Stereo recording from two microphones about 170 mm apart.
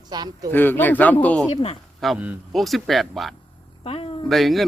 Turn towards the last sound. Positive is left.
turn(degrees=0)  # may be behind; listen again after turning